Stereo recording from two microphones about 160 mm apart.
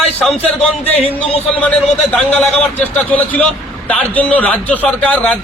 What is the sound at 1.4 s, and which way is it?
A man's voice, 10° left (ahead or behind).